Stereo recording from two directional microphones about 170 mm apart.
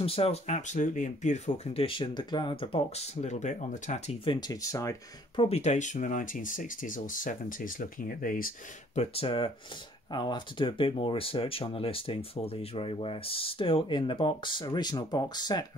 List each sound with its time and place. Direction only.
0.0 s speech: 35° left (ahead or behind)
4.2 s speech: 25° left (ahead or behind); by 8.5 s 55° left (ahead or behind)
8.9 s speech: 35° left (ahead or behind)